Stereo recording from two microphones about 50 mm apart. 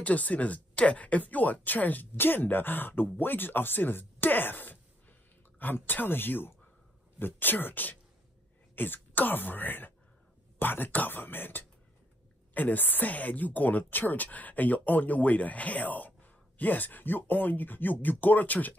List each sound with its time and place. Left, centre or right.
0.0 s speech: left